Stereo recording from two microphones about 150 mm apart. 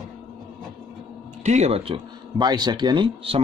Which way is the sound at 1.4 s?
50° right (ahead or behind).